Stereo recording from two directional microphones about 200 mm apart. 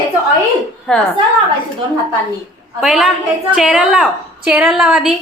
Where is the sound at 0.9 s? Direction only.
Centre (ahead or behind).